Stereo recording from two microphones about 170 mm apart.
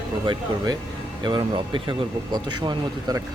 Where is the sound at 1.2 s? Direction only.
25° right (ahead or behind).